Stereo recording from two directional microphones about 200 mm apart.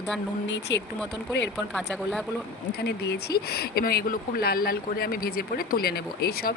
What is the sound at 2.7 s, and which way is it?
Speech, 55° left (ahead or behind).